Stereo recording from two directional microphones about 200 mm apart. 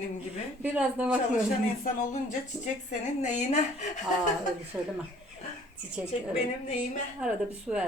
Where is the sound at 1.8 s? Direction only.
40° left (ahead or behind).